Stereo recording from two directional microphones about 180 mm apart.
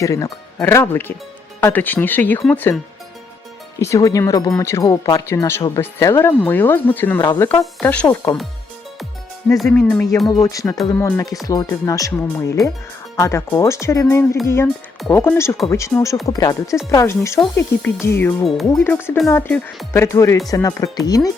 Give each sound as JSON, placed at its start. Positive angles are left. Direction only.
{"t": 0.0, "sound": "speech", "side_deg": 15}
{"t": 3.8, "sound": "speech", "side_deg": 15}
{"t": 9.6, "sound": "speech", "side_deg": 5}
{"t": 17.4, "sound": "speech", "side_deg": 0}
{"t": 18.0, "sound": "speech", "side_deg": 15}